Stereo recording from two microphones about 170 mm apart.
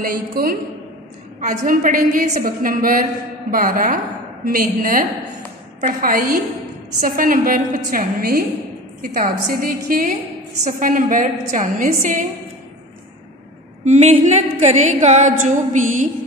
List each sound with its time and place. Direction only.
0.0 s a woman's voice: 55° right (ahead or behind)
13.8 s a woman's voice: 40° right (ahead or behind)